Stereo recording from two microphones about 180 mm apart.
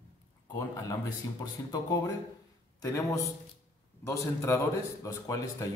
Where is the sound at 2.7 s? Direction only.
20° left (ahead or behind).